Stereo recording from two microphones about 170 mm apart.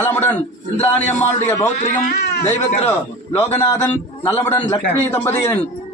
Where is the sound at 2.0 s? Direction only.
75° left (ahead or behind).